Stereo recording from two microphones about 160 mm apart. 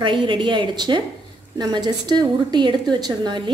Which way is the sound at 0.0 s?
30° right (ahead or behind).